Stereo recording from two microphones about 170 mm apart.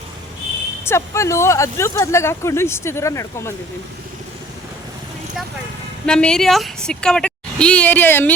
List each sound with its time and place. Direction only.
0.9 s speech: 15° left (ahead or behind)
6.1 s a woman's voice: 5° left (ahead or behind)